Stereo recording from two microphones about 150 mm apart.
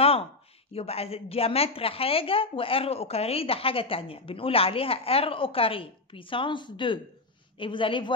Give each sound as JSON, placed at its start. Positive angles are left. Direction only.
{"t": 0.7, "sound": "a woman's voice", "side_deg": 40}